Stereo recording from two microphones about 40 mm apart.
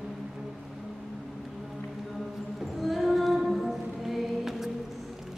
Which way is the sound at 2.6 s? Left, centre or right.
Centre.